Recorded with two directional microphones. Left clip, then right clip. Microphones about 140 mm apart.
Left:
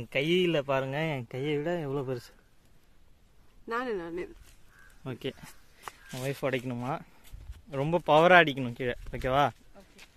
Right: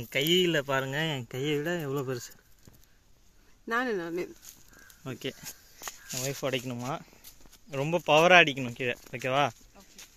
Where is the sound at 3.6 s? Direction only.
55° right (ahead or behind).